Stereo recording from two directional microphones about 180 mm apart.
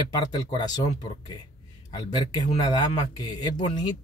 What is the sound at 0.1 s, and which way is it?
Speech, 25° left (ahead or behind).